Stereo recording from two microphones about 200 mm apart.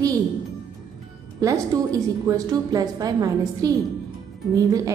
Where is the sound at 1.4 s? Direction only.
15° right (ahead or behind).